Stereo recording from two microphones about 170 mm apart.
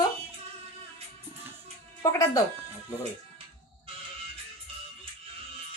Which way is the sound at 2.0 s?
20° left (ahead or behind).